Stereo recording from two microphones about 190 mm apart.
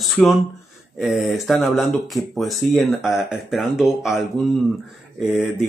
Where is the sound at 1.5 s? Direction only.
Centre (ahead or behind).